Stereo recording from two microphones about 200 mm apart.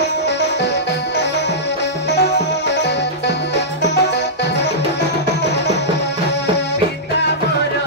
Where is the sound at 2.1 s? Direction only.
55° left (ahead or behind).